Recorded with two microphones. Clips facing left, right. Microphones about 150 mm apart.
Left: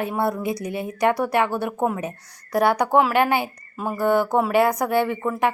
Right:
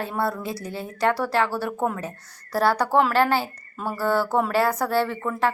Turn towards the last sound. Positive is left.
turn(degrees=15)  # may be behind; listen again after turning